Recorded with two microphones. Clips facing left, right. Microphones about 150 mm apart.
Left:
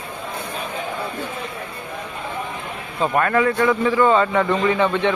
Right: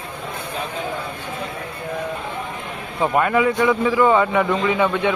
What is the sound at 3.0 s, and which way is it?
A man's voice, 15° right (ahead or behind).